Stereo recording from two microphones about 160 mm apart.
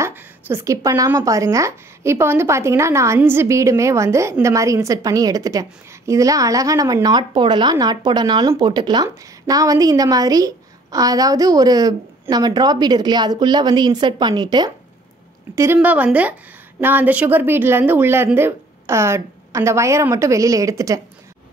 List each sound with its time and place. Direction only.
0.0 s speech: 15° right (ahead or behind)
15.5 s a woman's voice: 15° right (ahead or behind)